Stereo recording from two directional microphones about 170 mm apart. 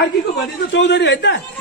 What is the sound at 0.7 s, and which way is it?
Speech, 90° left.